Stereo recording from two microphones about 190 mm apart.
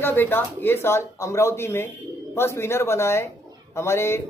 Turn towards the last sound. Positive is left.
turn(degrees=15)  # may be behind; listen again after turning